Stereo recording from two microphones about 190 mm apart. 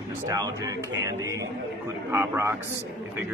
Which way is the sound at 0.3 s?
15° right (ahead or behind).